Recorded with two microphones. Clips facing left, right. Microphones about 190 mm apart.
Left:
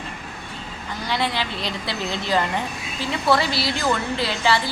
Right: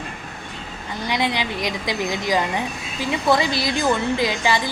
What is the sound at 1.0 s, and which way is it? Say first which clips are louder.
A woman's voice: right 2 dB; 15° right (ahead or behind).